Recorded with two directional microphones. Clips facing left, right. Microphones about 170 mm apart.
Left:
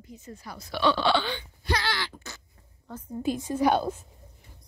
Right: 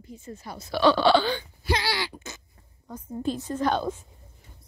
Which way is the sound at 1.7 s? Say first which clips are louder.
Right 2 dB; 15° right (ahead or behind).